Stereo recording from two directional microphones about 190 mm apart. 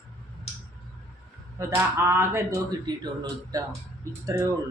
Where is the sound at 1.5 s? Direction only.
15° right (ahead or behind).